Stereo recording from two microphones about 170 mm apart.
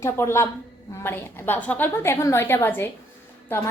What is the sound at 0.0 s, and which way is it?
A woman's voice, 15° left (ahead or behind).